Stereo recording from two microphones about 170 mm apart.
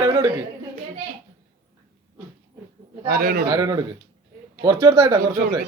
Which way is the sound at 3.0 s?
60° right (ahead or behind).